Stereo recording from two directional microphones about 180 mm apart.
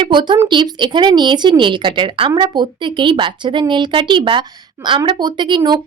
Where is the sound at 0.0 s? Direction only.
25° right (ahead or behind).